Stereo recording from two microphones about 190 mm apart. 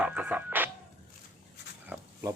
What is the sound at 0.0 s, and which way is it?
Music, 10° right (ahead or behind).